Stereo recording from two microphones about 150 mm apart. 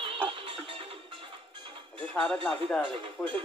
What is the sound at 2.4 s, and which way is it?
Speech, 5° left (ahead or behind).